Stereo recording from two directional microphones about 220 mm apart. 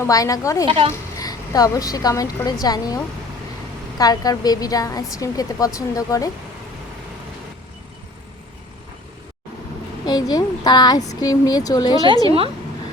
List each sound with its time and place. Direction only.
0.0 s speech: 15° left (ahead or behind)
0.6 s a woman's voice: 25° right (ahead or behind)
1.2 s speech: 15° left (ahead or behind)
10.1 s speech: 20° left (ahead or behind)